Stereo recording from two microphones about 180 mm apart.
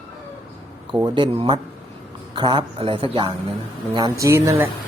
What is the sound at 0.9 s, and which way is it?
A man's voice, 25° right (ahead or behind).